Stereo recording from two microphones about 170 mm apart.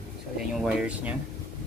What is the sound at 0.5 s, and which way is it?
Speech, 5° right (ahead or behind).